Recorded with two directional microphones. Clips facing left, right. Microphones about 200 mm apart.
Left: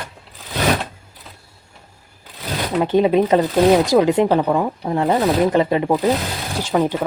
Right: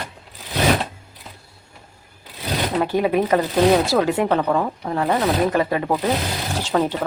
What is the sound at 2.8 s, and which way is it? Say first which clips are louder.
Speech: left 6 dB; 20° left (ahead or behind).